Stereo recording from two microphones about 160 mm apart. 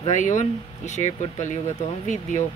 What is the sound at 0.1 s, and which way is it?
Speech, 50° left (ahead or behind).